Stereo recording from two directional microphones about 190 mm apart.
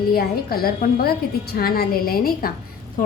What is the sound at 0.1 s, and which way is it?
A woman's voice, 50° left (ahead or behind).